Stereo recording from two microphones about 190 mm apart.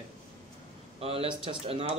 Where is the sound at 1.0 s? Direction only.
30° right (ahead or behind).